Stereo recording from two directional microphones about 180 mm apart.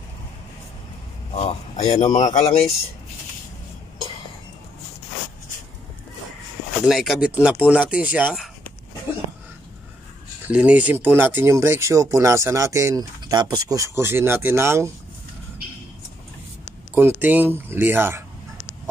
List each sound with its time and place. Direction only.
1.3 s a man's voice: 35° left (ahead or behind)
6.9 s speech: centre (ahead or behind)
10.5 s speech: 10° right (ahead or behind)
16.9 s speech: 10° right (ahead or behind)